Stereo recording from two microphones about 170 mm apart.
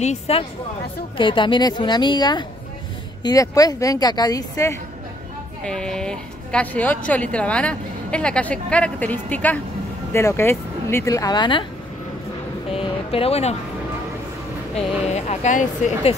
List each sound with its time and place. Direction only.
0.0 s a woman's voice: 35° left (ahead or behind); by 4.7 s 20° left (ahead or behind)
5.7 s a woman's voice: 5° left (ahead or behind); by 11.6 s 25° left (ahead or behind)
12.7 s speech: 35° left (ahead or behind)
14.8 s speech: 40° left (ahead or behind)